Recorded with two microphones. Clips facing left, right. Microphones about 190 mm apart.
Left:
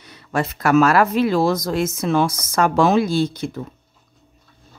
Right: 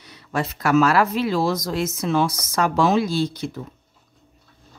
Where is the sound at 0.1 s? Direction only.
50° left (ahead or behind).